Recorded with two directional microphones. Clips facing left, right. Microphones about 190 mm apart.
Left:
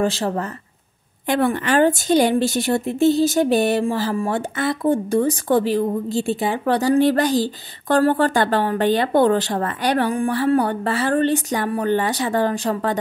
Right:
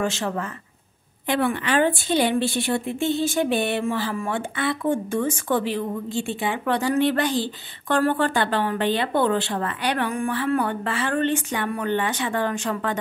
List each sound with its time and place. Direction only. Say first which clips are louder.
0.0 s a woman's voice: left 4 dB; 35° left (ahead or behind)